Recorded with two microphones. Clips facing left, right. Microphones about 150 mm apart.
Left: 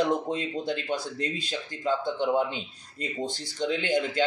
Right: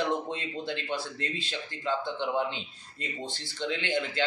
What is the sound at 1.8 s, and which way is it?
Speech, 45° left (ahead or behind).